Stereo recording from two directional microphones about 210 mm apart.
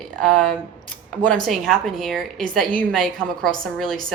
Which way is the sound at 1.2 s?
Centre (ahead or behind).